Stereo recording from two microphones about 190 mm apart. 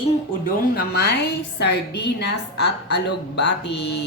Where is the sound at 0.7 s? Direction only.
60° left (ahead or behind).